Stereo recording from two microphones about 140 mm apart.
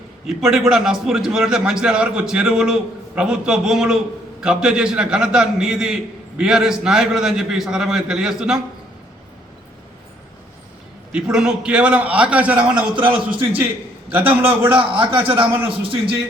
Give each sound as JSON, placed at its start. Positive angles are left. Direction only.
{"t": 0.3, "sound": "a man's voice", "side_deg": -5}
{"t": 11.1, "sound": "a man's voice", "side_deg": -5}
{"t": 14.1, "sound": "a man's voice", "side_deg": -15}
{"t": 14.8, "sound": "a man's voice", "side_deg": -40}